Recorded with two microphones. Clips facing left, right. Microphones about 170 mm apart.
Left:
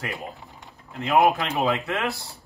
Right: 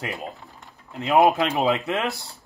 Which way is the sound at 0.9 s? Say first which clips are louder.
Right 2 dB; 20° right (ahead or behind).